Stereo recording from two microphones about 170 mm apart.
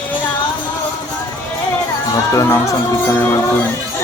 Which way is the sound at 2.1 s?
20° left (ahead or behind).